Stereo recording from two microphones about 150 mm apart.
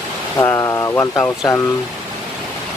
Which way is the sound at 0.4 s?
20° left (ahead or behind).